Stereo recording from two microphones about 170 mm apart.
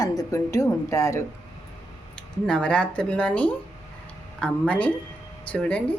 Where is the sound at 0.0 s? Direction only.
20° left (ahead or behind).